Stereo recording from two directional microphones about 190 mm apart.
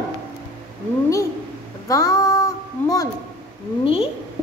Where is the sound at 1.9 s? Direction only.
15° left (ahead or behind).